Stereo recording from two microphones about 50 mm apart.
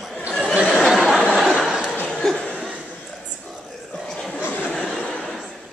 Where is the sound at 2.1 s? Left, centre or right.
Centre.